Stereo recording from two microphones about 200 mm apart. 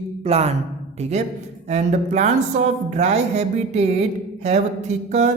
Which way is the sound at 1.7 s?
35° right (ahead or behind).